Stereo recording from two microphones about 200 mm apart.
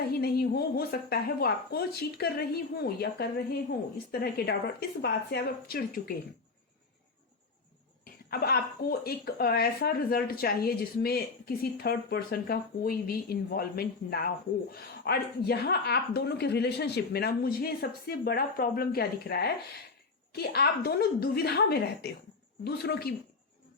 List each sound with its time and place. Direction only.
0.1 s speech: 50° left (ahead or behind)
8.3 s speech: 50° left (ahead or behind)